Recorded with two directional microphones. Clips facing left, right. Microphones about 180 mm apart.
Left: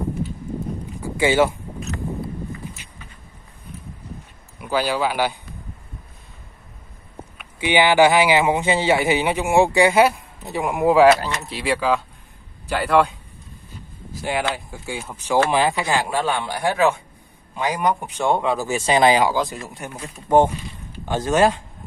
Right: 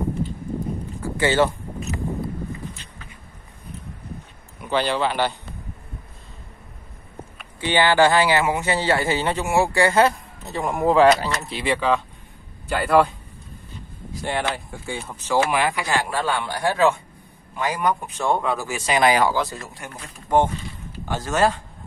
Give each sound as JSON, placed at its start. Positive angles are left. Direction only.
{"t": 1.0, "sound": "a sound", "side_deg": 10}
{"t": 4.6, "sound": "speech", "side_deg": 5}
{"t": 7.6, "sound": "speech", "side_deg": 15}
{"t": 14.5, "sound": "speech", "side_deg": 0}
{"t": 15.5, "sound": "speech", "side_deg": 25}
{"t": 19.2, "sound": "speech", "side_deg": 15}